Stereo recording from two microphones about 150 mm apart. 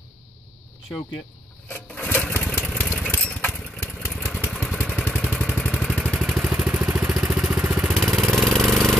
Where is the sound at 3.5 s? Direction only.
Centre (ahead or behind).